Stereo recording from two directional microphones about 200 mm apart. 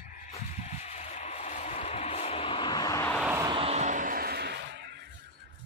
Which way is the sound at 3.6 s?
35° right (ahead or behind).